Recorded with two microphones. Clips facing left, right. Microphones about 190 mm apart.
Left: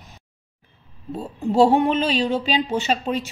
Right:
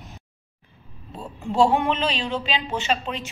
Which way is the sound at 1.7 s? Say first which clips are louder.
Left 4 dB; 40° left (ahead or behind).